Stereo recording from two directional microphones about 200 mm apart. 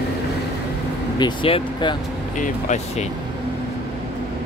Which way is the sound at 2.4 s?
35° left (ahead or behind).